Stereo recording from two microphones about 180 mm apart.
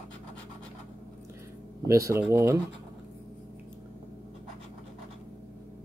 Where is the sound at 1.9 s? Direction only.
15° right (ahead or behind).